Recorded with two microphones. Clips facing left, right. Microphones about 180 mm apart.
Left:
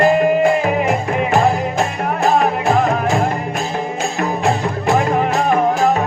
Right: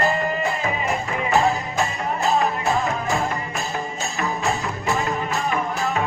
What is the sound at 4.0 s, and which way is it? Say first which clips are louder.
Music: left 7 dB; 70° left (ahead or behind).